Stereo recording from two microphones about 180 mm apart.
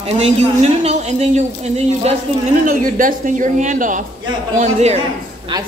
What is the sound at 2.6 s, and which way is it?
Speech, 50° right (ahead or behind).